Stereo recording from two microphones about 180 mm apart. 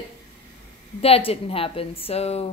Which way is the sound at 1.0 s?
35° left (ahead or behind).